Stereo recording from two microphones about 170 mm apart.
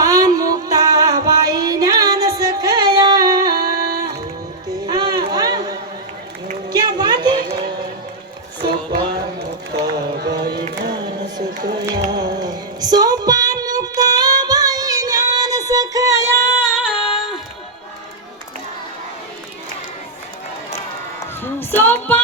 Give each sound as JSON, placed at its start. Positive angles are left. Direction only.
{"t": 0.0, "sound": "music", "side_deg": -20}
{"t": 3.5, "sound": "music", "side_deg": -65}
{"t": 4.9, "sound": "a sound", "side_deg": -25}
{"t": 9.7, "sound": "music", "side_deg": -25}
{"t": 10.2, "sound": "music", "side_deg": -75}
{"t": 12.1, "sound": "music", "side_deg": -25}
{"t": 21.4, "sound": "music", "side_deg": 10}